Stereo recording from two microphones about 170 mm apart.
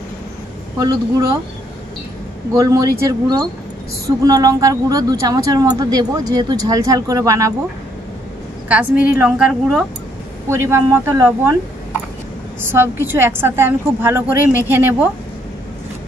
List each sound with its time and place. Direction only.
2.5 s speech: 20° right (ahead or behind)
8.6 s a woman's voice: 10° right (ahead or behind)
10.5 s a woman's voice: 15° right (ahead or behind)
12.6 s a woman's voice: 15° right (ahead or behind)